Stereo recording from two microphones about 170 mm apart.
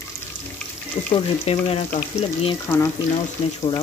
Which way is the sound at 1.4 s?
35° left (ahead or behind).